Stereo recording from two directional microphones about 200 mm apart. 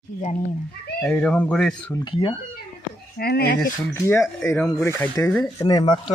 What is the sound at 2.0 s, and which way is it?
Speech, 25° left (ahead or behind).